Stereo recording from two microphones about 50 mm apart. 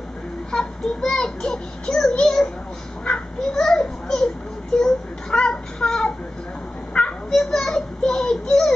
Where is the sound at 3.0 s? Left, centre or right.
Centre.